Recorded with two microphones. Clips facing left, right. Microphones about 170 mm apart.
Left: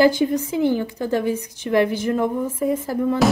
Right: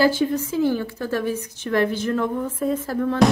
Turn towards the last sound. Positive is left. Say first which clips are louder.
# even
turn(degrees=10)  # may be behind; listen again after turning